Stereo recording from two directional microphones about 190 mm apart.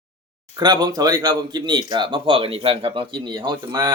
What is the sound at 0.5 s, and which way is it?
Speech, 20° right (ahead or behind).